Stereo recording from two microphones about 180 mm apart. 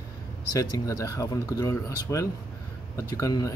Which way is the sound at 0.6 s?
20° left (ahead or behind).